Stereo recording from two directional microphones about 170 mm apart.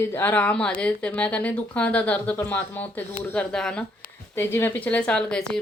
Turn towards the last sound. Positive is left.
turn(degrees=5)  # may be behind; listen again after turning